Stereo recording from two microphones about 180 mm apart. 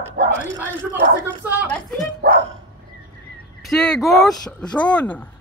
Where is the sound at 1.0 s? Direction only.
55° right (ahead or behind).